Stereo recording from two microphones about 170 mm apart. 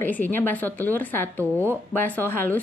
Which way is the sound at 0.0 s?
10° left (ahead or behind).